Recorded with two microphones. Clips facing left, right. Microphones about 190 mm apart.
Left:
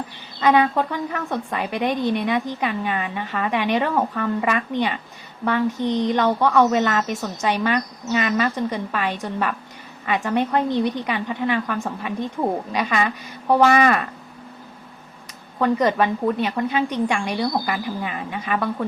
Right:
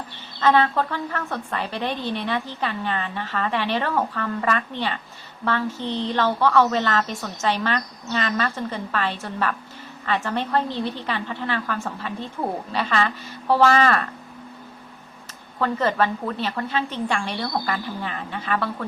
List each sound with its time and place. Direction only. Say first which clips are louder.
0.3 s a woman's voice: left 2 dB; 15° left (ahead or behind)
15.5 s a woman's voice: left 3 dB; 15° left (ahead or behind)